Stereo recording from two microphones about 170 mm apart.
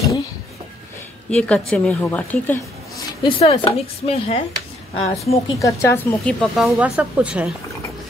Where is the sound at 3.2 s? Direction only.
30° left (ahead or behind).